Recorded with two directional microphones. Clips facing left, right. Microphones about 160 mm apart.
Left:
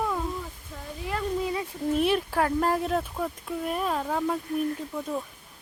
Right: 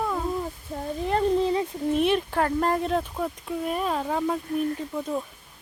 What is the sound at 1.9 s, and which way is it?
Speech, 5° left (ahead or behind).